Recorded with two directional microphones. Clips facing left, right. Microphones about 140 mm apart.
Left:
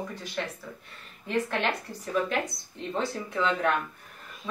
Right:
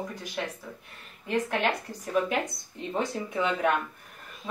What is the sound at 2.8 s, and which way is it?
Speech, 15° right (ahead or behind).